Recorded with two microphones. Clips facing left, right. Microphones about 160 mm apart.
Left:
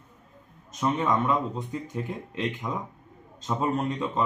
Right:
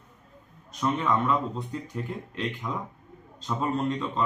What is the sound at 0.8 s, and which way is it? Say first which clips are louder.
Speech: left 1 dB; 20° left (ahead or behind).